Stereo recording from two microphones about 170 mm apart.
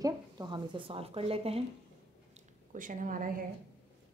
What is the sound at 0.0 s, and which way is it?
Speech, 25° right (ahead or behind).